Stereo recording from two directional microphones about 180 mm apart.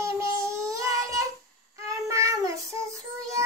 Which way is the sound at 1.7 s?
15° right (ahead or behind).